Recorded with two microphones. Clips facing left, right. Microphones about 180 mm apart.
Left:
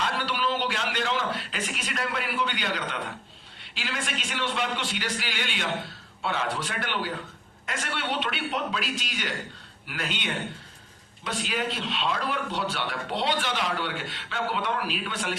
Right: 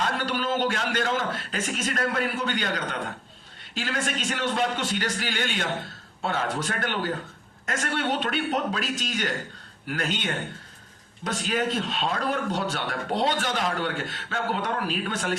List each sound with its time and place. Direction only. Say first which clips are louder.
0.0 s a man's voice: right 1 dB; 45° right (ahead or behind)